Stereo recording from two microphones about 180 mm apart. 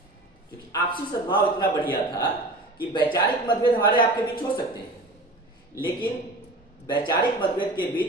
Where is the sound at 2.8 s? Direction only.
25° left (ahead or behind).